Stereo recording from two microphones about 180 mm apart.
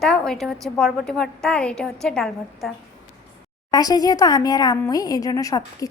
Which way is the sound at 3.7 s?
20° left (ahead or behind).